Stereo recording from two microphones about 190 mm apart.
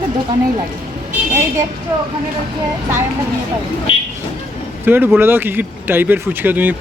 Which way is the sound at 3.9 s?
30° left (ahead or behind).